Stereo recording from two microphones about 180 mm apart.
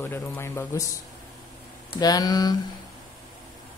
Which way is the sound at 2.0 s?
20° left (ahead or behind).